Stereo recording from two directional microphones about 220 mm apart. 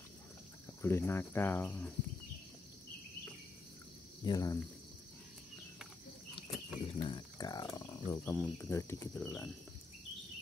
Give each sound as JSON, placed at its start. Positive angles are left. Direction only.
{"t": 0.8, "sound": "cricket", "side_deg": 10}
{"t": 4.2, "sound": "cricket", "side_deg": 20}
{"t": 6.9, "sound": "cricket", "side_deg": 25}
{"t": 9.2, "sound": "speech", "side_deg": 0}